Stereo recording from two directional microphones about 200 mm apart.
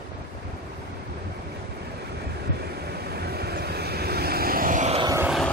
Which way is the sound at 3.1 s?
50° right (ahead or behind).